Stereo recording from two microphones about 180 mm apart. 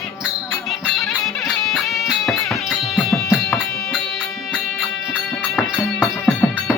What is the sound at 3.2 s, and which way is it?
Music, 15° left (ahead or behind).